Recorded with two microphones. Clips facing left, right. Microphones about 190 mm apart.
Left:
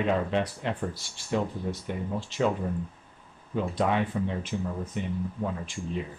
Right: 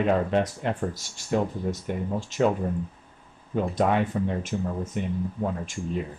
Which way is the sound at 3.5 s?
50° right (ahead or behind).